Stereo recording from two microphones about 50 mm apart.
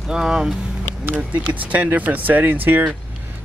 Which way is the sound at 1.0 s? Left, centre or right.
Right.